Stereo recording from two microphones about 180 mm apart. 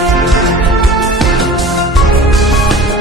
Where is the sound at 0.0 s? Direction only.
Centre (ahead or behind).